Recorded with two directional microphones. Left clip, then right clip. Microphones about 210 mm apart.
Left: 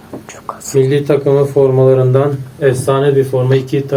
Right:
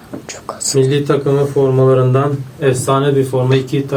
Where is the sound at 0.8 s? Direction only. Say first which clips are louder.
Left 3 dB; 5° right (ahead or behind).